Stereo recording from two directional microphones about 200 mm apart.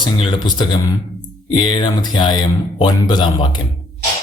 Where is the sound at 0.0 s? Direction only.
25° left (ahead or behind).